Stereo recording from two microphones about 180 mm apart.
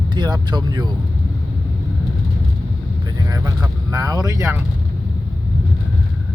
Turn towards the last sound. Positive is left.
turn(degrees=-15)  # may be behind; listen again after turning